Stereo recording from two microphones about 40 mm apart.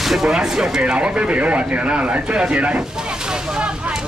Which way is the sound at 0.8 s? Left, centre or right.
Right.